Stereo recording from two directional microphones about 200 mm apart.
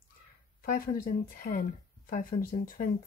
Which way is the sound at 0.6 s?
45° left (ahead or behind).